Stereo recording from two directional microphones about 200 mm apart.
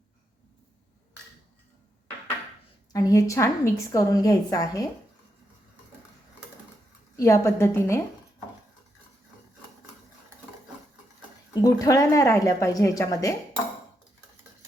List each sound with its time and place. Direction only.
2.9 s a woman's voice: 15° left (ahead or behind)
7.2 s a woman's voice: 15° left (ahead or behind)
11.6 s a woman's voice: 15° left (ahead or behind)